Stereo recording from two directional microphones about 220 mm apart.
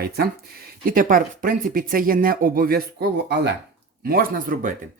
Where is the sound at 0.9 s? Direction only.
40° right (ahead or behind).